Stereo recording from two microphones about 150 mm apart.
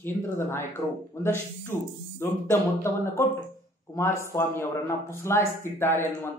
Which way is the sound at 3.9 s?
20° left (ahead or behind).